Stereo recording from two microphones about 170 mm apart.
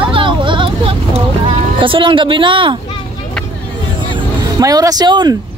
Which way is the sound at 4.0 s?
25° right (ahead or behind).